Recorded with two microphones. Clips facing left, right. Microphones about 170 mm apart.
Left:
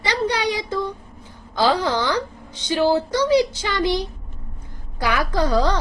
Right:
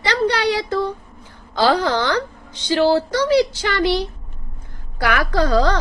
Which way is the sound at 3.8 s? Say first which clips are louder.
Right 2 dB; 65° right (ahead or behind).